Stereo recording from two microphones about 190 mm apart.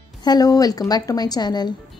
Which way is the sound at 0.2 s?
20° left (ahead or behind).